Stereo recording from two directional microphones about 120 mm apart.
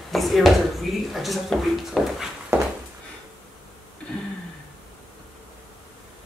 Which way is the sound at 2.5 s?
20° right (ahead or behind).